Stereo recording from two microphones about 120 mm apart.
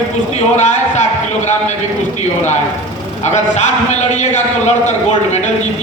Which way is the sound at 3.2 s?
75° left (ahead or behind).